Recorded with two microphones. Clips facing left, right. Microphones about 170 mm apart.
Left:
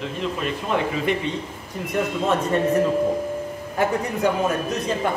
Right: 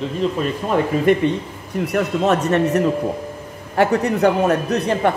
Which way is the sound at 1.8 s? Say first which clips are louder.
Right 5 dB; 70° right (ahead or behind).